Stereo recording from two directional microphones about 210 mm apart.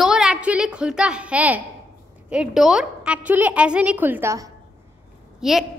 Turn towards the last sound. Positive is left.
turn(degrees=0)  # may be behind; listen again after turning